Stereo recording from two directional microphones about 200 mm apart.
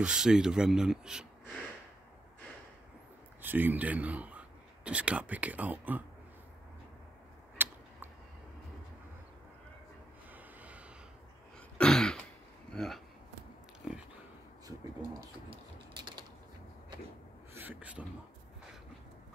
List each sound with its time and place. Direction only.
0.0 s speech: 5° right (ahead or behind)
3.4 s speech: 10° right (ahead or behind)
7.5 s tick: 10° right (ahead or behind)
10.3 s snort: 5° right (ahead or behind)
11.8 s throat clearing: 5° left (ahead or behind)
12.7 s a sound: centre (ahead or behind)
14.7 s pigeon: 20° right (ahead or behind)
15.9 s typing: 25° right (ahead or behind)
17.6 s a sound: 10° right (ahead or behind)